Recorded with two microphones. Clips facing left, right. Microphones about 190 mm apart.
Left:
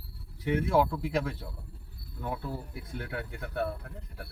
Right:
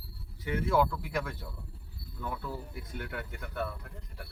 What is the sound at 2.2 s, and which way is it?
Speech, 35° left (ahead or behind).